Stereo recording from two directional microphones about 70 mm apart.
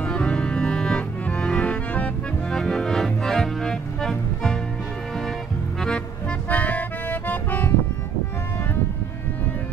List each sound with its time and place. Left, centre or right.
0.0 s music: centre
6.5 s music: left